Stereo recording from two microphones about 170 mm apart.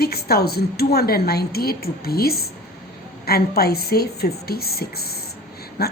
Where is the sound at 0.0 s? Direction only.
65° left (ahead or behind).